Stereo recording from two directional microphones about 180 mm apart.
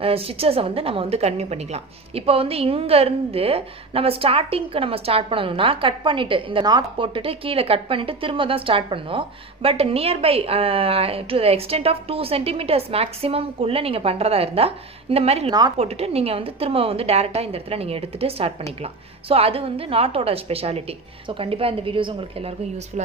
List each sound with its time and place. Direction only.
0.0 s a woman's voice: 30° right (ahead or behind)
22.9 s a woman's voice: 40° right (ahead or behind)